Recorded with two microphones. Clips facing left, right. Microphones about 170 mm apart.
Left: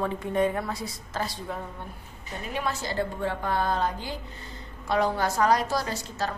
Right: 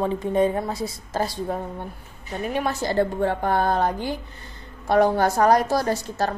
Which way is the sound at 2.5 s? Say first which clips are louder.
Right 6 dB; 50° right (ahead or behind).